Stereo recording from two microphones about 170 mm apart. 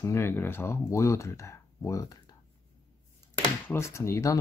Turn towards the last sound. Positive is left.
turn(degrees=15)  # may be behind; listen again after turning